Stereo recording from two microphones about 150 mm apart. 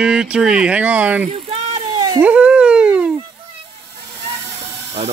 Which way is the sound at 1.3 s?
40° right (ahead or behind).